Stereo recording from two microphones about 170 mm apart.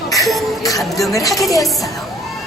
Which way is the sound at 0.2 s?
Centre (ahead or behind).